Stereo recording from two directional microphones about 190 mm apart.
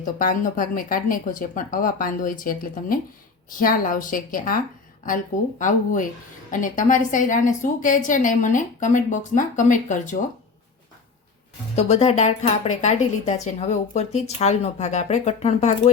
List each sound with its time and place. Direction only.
0.0 s a woman's voice: 45° left (ahead or behind)
11.8 s speech: 35° left (ahead or behind)